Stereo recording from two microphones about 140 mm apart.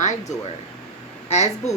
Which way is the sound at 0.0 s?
55° left (ahead or behind).